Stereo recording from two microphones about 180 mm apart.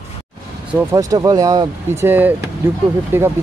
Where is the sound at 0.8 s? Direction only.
20° right (ahead or behind).